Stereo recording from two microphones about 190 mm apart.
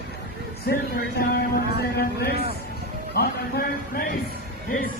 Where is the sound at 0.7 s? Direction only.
55° left (ahead or behind).